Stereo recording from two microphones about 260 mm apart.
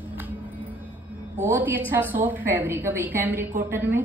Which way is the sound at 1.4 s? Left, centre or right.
Centre.